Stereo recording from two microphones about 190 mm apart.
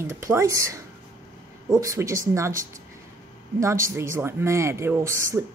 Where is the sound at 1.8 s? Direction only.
15° right (ahead or behind).